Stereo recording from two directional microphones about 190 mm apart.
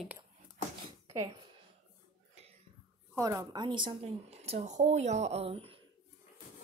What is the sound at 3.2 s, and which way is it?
Speech, 15° right (ahead or behind).